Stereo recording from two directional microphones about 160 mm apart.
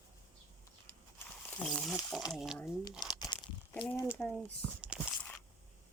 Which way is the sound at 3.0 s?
25° left (ahead or behind).